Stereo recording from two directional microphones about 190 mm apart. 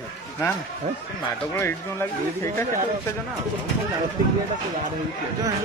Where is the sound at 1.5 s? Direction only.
10° left (ahead or behind).